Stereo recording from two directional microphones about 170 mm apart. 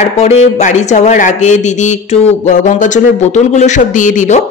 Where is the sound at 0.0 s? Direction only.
40° left (ahead or behind).